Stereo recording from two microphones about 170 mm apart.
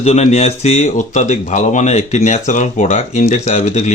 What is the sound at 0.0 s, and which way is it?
Speech, 40° left (ahead or behind).